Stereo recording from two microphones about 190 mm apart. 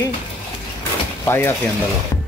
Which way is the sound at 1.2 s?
15° left (ahead or behind).